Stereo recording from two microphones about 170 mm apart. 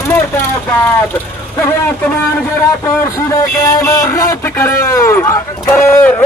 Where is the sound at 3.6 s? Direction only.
20° left (ahead or behind).